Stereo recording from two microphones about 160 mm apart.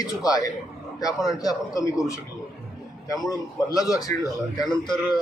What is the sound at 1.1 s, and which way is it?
Speech, centre (ahead or behind).